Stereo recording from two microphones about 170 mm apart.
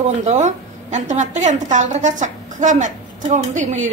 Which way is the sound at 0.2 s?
45° right (ahead or behind).